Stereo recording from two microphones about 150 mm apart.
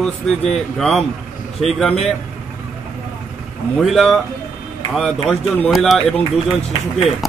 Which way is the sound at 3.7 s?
Centre (ahead or behind).